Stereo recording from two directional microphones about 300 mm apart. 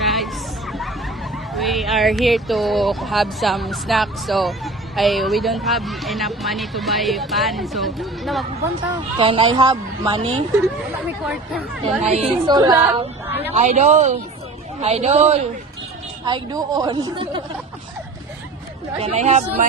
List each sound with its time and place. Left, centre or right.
0.0 s hubbub: centre
0.7 s a sound: centre
1.5 s speech: centre
9.1 s a woman's voice: centre
11.9 s a woman's voice: right
13.5 s a man's voice: right
19.0 s a man's voice: right